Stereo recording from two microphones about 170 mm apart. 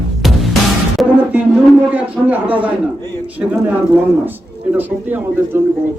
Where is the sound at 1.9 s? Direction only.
10° right (ahead or behind).